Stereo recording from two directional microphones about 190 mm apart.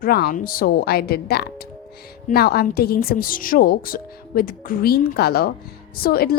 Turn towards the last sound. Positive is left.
turn(degrees=55)  # may be behind; listen again after turning